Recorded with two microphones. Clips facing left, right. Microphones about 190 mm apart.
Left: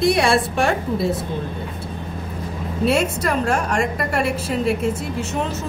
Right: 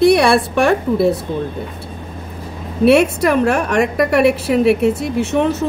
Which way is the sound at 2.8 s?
65° right (ahead or behind).